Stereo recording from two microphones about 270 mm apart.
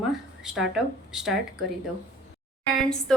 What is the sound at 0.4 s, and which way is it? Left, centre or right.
Speech, centre.